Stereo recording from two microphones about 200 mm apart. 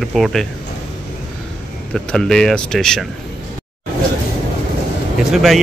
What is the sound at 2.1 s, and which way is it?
Speech, 5° left (ahead or behind).